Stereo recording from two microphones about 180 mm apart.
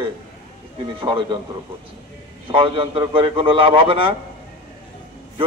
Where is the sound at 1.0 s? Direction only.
30° right (ahead or behind).